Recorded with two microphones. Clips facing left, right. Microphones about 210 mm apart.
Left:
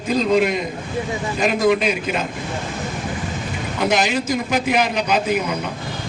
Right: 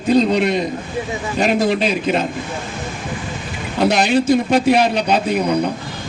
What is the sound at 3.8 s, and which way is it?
A man's voice, 30° right (ahead or behind).